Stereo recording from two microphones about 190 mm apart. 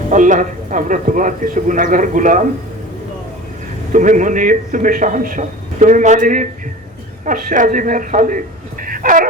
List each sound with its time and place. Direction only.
0.1 s a man's voice: 40° right (ahead or behind)
3.9 s a man's voice: 40° right (ahead or behind)
8.8 s a sound: 45° right (ahead or behind)